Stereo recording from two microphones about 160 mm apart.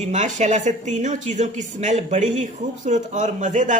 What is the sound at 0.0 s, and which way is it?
Speech, 50° right (ahead or behind).